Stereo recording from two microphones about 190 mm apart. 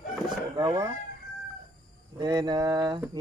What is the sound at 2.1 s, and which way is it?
Speech, 20° right (ahead or behind).